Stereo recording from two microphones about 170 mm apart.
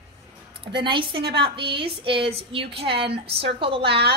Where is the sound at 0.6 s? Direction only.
30° right (ahead or behind).